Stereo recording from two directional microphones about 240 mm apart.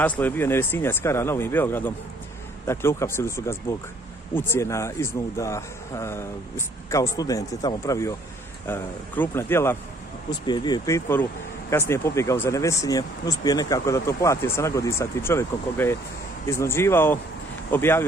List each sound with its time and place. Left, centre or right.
0.0 s speech: centre